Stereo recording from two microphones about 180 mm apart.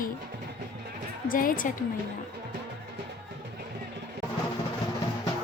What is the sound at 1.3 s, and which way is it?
Speech, 50° left (ahead or behind).